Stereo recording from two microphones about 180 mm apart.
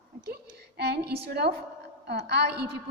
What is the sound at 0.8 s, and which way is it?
A woman's voice, 65° right (ahead or behind).